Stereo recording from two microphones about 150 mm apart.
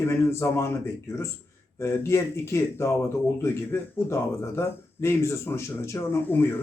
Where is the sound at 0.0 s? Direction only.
20° left (ahead or behind).